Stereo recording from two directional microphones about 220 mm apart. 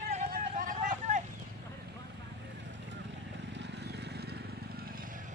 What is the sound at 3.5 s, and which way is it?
Vehicle, 50° right (ahead or behind).